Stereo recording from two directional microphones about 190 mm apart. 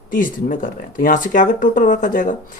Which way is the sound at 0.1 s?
45° left (ahead or behind).